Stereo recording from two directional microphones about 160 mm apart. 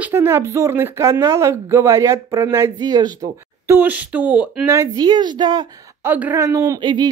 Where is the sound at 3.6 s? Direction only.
15° right (ahead or behind).